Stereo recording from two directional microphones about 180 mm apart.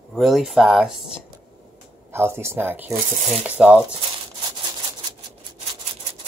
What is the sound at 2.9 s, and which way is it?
Speech, 40° right (ahead or behind).